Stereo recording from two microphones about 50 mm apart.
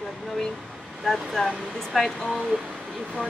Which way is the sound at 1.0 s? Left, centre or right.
Centre.